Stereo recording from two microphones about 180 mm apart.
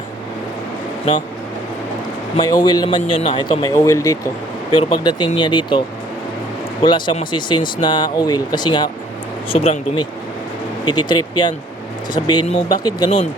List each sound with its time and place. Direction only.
2.3 s speech: 20° left (ahead or behind)
6.8 s speech: 25° left (ahead or behind)